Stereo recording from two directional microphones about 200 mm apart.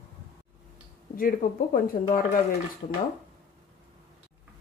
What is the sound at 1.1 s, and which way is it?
Speech, 45° left (ahead or behind).